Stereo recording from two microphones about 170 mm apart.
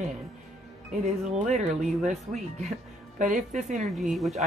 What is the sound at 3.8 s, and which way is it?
Speech, centre (ahead or behind).